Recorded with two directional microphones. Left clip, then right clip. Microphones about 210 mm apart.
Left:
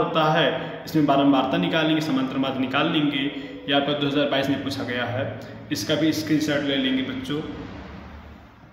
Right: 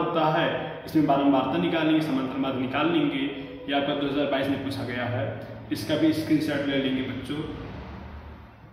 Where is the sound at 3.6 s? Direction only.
50° left (ahead or behind).